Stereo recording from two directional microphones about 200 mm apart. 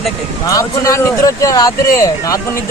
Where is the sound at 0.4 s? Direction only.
15° left (ahead or behind).